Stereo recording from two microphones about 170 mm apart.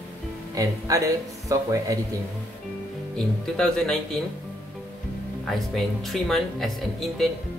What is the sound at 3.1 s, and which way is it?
Speech, 5° left (ahead or behind).